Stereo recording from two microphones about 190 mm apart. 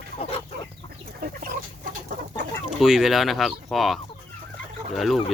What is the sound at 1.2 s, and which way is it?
Chicken, 50° right (ahead or behind).